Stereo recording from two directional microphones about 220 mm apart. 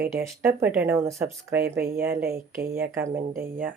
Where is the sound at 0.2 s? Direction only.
10° right (ahead or behind).